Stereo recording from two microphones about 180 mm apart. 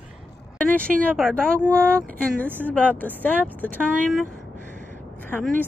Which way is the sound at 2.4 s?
10° right (ahead or behind).